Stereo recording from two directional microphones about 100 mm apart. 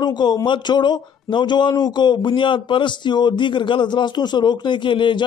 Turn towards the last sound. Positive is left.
turn(degrees=55)  # may be behind; listen again after turning